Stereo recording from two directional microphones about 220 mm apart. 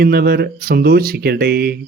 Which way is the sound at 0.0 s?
45° right (ahead or behind).